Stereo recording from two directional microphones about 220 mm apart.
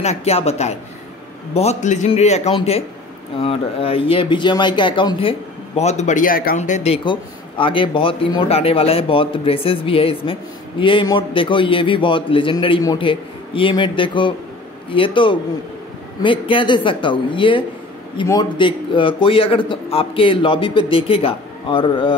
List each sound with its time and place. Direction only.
0.0 s a man's voice: 30° left (ahead or behind)